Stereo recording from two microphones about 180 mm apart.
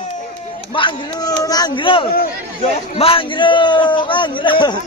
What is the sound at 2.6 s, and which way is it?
A man's voice, 30° left (ahead or behind).